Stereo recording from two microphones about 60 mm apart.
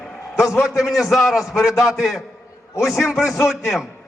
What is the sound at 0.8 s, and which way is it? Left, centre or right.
A man's voice, centre.